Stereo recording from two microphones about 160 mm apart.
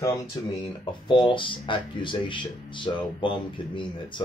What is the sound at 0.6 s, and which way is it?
Speech, 35° left (ahead or behind).